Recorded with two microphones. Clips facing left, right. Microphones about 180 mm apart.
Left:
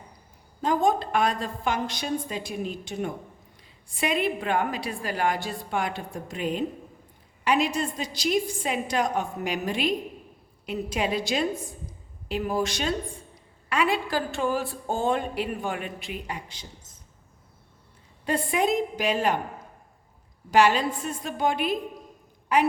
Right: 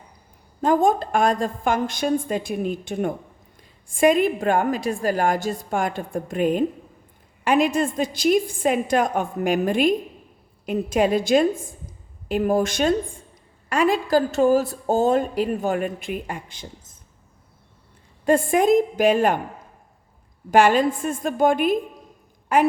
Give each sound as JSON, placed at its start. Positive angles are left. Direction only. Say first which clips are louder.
{"t": 0.6, "sound": "a woman's voice", "louder": "right 5 dB", "side_deg": -50}
{"t": 18.3, "sound": "a woman's voice", "louder": "right 8 dB", "side_deg": -45}
{"t": 20.5, "sound": "a woman's voice", "louder": "right 4 dB", "side_deg": -50}